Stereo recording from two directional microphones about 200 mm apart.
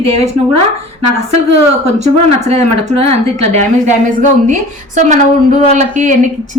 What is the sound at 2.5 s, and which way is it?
A woman's voice, 30° right (ahead or behind).